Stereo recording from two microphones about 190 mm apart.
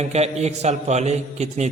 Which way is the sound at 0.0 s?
35° right (ahead or behind).